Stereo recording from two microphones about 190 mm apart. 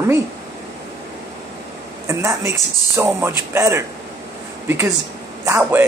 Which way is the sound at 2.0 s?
15° right (ahead or behind).